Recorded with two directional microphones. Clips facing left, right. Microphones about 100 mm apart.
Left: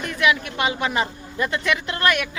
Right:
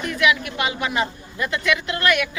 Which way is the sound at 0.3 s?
35° left (ahead or behind).